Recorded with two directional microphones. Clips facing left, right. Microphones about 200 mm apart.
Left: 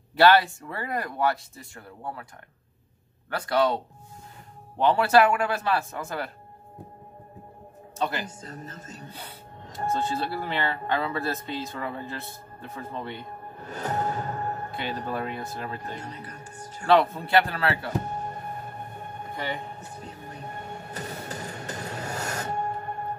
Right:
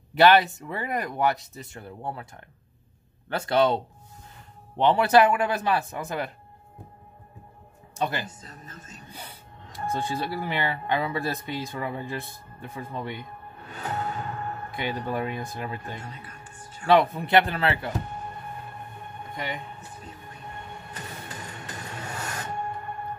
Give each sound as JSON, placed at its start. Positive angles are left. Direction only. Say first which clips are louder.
{"t": 0.1, "sound": "speech", "louder": "right 1 dB", "side_deg": -20}
{"t": 3.3, "sound": "speech", "louder": "right 2 dB", "side_deg": -25}
{"t": 8.0, "sound": "speech", "louder": "even", "side_deg": -15}
{"t": 8.4, "sound": "speech", "louder": "left 5 dB", "side_deg": 40}
{"t": 9.9, "sound": "speech", "louder": "right 1 dB", "side_deg": -15}
{"t": 13.6, "sound": "music", "louder": "left 3 dB", "side_deg": 40}
{"t": 14.8, "sound": "speech", "louder": "right 4 dB", "side_deg": -15}
{"t": 16.0, "sound": "music", "louder": "left 3 dB", "side_deg": 40}
{"t": 16.8, "sound": "speech", "louder": "right 1 dB", "side_deg": -15}
{"t": 18.0, "sound": "music", "louder": "left 4 dB", "side_deg": 40}
{"t": 19.3, "sound": "speech", "louder": "left 1 dB", "side_deg": -15}
{"t": 20.0, "sound": "music", "louder": "left 3 dB", "side_deg": 40}